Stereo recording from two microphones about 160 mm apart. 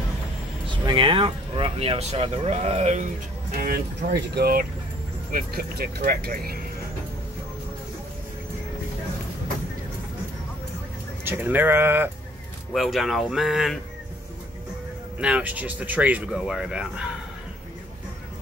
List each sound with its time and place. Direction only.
0.8 s speech: 30° right (ahead or behind)
3.5 s speech: 70° right (ahead or behind)
11.2 s speech: 15° right (ahead or behind)
12.7 s speech: centre (ahead or behind)
15.1 s speech: 10° right (ahead or behind)